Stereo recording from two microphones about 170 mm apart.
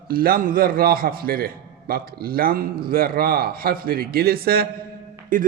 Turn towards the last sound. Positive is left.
turn(degrees=-55)  # may be behind; listen again after turning